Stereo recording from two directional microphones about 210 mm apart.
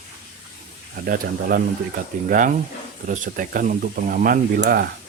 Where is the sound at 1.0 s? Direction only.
45° right (ahead or behind).